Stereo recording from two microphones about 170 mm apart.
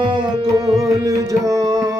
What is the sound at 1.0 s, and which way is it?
Tabla, 20° right (ahead or behind).